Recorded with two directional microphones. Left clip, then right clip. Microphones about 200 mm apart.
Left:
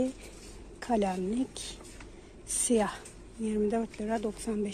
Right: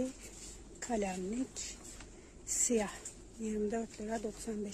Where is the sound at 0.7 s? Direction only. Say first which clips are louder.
Left 7 dB; centre (ahead or behind).